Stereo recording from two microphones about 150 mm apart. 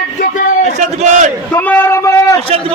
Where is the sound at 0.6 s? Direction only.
55° right (ahead or behind).